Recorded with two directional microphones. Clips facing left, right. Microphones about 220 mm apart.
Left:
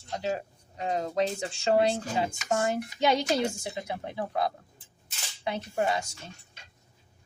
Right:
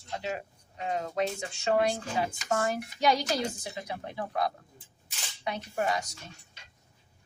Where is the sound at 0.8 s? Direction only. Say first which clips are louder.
Left 3 dB; 35° left (ahead or behind).